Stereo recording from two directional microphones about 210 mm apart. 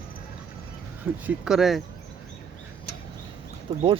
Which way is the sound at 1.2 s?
5° right (ahead or behind).